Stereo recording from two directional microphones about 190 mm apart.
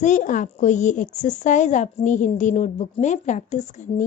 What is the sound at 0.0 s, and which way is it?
A woman's voice, 40° left (ahead or behind).